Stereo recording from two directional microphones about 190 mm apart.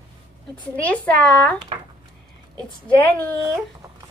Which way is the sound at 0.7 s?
10° left (ahead or behind).